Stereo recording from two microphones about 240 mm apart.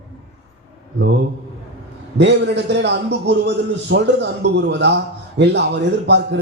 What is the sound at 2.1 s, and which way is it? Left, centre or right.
A man's voice, right.